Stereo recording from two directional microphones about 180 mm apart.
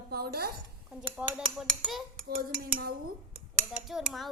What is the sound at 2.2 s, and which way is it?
Dishes, 50° right (ahead or behind).